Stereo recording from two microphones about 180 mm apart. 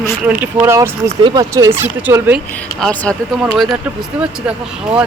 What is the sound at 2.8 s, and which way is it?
Speech, 5° left (ahead or behind).